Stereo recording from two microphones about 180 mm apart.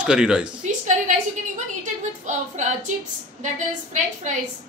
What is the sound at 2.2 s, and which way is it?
Child singing, 40° right (ahead or behind).